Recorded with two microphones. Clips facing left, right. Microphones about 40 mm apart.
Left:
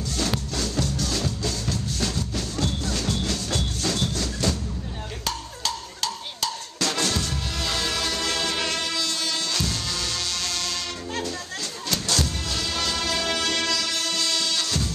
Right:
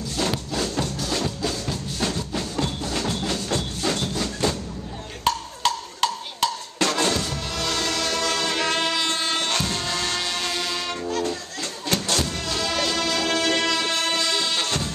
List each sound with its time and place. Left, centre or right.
0.2 s music: centre
4.1 s a sound: right
5.2 s music: right
7.0 s music: right
7.2 s music: centre
8.6 s music: right
11.9 s music: right
12.4 s music: centre
13.7 s music: right